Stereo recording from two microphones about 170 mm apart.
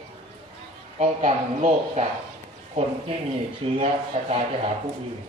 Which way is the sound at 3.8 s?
40° right (ahead or behind).